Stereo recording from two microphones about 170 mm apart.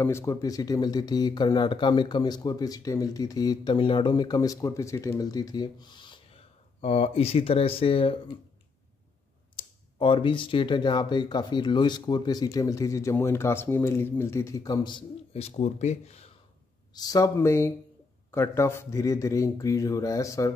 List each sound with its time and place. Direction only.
0.0 s speech: 15° left (ahead or behind); by 8.2 s 30° left (ahead or behind)
9.6 s speech: 30° left (ahead or behind)
16.9 s speech: 20° left (ahead or behind)